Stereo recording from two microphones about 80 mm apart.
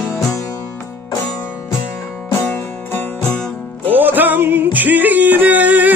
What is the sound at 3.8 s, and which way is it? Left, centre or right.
Music, right.